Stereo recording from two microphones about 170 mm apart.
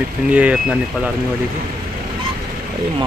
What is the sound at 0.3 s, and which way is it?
Speech, 10° right (ahead or behind).